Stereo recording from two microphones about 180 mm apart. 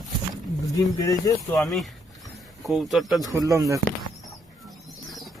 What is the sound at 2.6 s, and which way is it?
Speech, centre (ahead or behind).